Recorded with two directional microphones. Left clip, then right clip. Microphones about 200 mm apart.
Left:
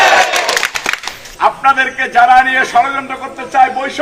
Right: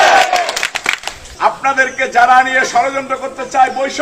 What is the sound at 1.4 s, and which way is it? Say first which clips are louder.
Speech: left 2 dB; centre (ahead or behind).